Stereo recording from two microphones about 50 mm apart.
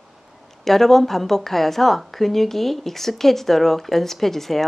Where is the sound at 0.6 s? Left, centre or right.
Centre.